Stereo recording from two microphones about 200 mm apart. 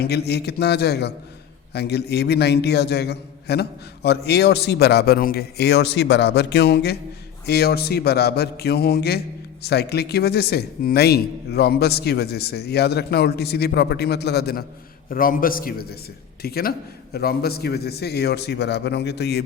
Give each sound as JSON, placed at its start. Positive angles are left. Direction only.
{"t": 0.0, "sound": "a man's voice", "side_deg": 55}